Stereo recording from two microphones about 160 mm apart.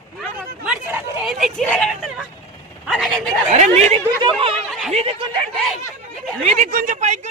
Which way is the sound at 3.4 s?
50° right (ahead or behind).